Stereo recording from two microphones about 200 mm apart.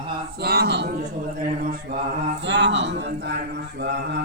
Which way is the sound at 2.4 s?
65° right (ahead or behind).